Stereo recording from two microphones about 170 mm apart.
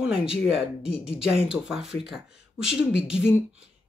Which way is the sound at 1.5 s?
5° right (ahead or behind).